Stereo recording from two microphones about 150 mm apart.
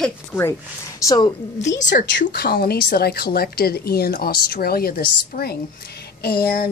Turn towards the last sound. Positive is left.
turn(degrees=90)